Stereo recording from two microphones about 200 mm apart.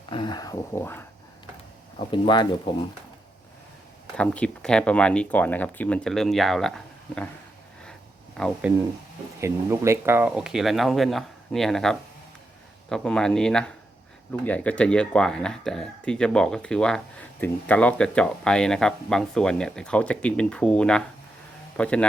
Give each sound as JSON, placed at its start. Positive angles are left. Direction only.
{"t": 0.1, "sound": "speech", "side_deg": 20}
{"t": 2.0, "sound": "speech", "side_deg": 25}
{"t": 4.2, "sound": "speech", "side_deg": 5}
{"t": 8.4, "sound": "speech", "side_deg": 5}
{"t": 9.4, "sound": "speech", "side_deg": -15}